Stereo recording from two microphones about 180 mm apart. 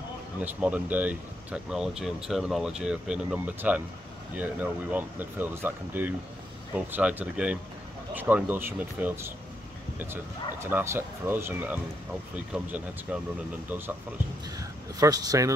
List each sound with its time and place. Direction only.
0.4 s speech: 10° right (ahead or behind)